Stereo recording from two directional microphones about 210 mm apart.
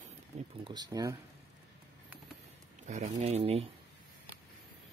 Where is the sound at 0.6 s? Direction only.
20° right (ahead or behind).